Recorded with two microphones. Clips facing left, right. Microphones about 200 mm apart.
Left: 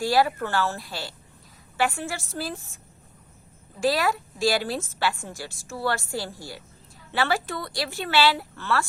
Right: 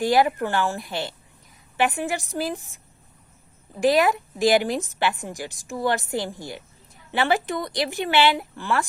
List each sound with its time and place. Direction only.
0.0 s a woman's voice: 20° right (ahead or behind)